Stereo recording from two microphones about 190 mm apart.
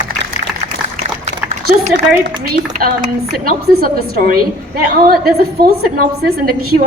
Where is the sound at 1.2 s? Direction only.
40° right (ahead or behind).